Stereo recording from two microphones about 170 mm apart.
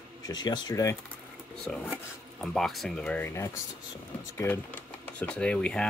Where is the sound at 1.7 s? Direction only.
5° left (ahead or behind).